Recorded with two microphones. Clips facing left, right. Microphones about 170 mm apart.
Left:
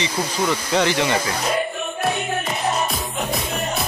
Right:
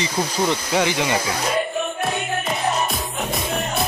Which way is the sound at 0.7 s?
10° right (ahead or behind).